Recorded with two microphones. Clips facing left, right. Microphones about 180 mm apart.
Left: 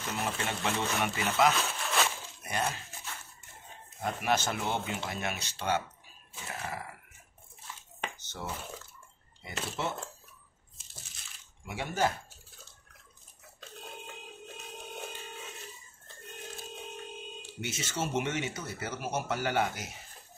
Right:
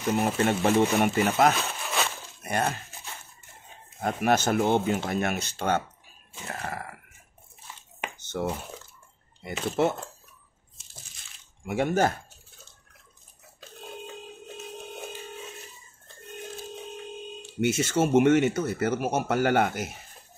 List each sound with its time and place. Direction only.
0.2 s speech: 55° right (ahead or behind)
1.6 s a sound: centre (ahead or behind)
2.4 s speech: 55° right (ahead or behind)
4.0 s speech: 50° right (ahead or behind)
8.3 s speech: 60° right (ahead or behind)
9.7 s speech: 55° right (ahead or behind)
11.6 s speech: 50° right (ahead or behind)
17.6 s speech: 55° right (ahead or behind)